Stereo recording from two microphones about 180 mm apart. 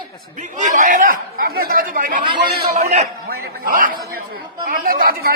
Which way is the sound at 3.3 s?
55° right (ahead or behind).